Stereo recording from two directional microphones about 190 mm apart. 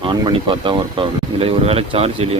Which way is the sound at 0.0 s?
25° right (ahead or behind).